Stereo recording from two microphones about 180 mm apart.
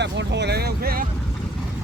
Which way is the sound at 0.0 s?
75° right (ahead or behind).